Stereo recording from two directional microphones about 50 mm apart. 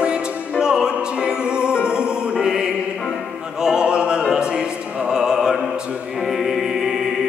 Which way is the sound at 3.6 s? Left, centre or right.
Centre.